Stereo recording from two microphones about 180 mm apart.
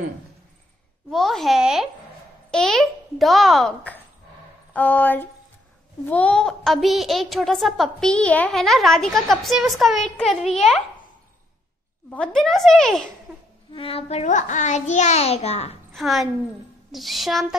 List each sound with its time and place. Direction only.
1.1 s a woman's voice: centre (ahead or behind)
12.4 s a woman's voice: centre (ahead or behind)
13.3 s a sound: 10° right (ahead or behind)
13.7 s a child's voice: 30° left (ahead or behind)
15.9 s a woman's voice: centre (ahead or behind)